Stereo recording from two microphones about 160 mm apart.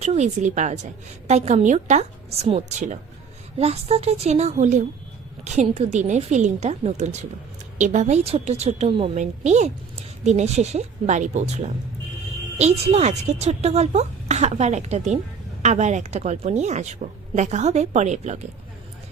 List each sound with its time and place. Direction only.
0.0 s a woman's voice: 45° right (ahead or behind)
9.1 s a woman's voice: 45° right (ahead or behind)